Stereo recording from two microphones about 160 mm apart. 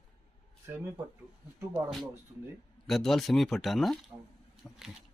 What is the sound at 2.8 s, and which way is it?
Speech, centre (ahead or behind).